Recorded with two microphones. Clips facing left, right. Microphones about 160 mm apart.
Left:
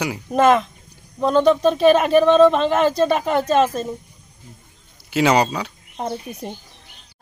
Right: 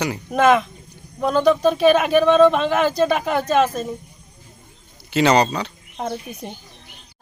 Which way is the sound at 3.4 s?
30° left (ahead or behind).